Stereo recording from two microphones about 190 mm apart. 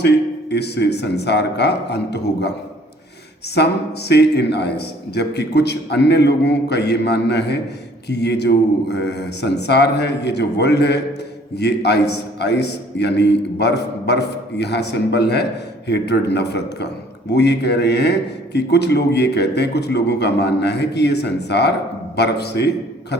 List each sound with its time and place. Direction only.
0.5 s a man's voice: 60° left (ahead or behind)
4.1 s a man's voice: 60° left (ahead or behind)